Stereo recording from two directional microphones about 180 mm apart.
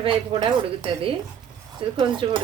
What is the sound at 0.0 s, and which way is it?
A woman's voice, 30° right (ahead or behind).